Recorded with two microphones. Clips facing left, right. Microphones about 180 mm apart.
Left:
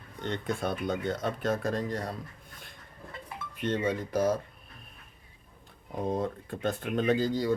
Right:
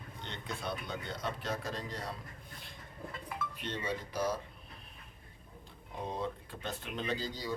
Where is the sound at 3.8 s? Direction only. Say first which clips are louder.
Left 6 dB; 50° left (ahead or behind).